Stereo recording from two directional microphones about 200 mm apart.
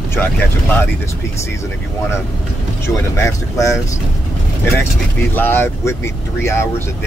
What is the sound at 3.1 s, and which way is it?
Speech, 15° left (ahead or behind).